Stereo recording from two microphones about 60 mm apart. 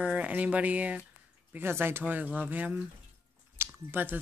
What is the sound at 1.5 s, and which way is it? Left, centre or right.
Speech, right.